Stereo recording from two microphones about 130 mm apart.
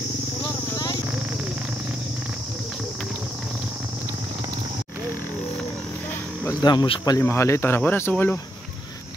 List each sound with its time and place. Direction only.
6.6 s speech: 30° left (ahead or behind); by 8.4 s 15° left (ahead or behind)